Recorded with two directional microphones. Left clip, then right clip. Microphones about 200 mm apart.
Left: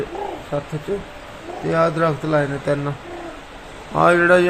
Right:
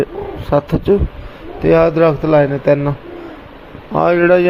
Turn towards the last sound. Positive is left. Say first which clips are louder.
# right 2 dB
turn(degrees=-20)  # may be behind; listen again after turning